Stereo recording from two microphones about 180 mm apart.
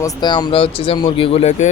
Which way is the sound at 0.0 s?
25° left (ahead or behind).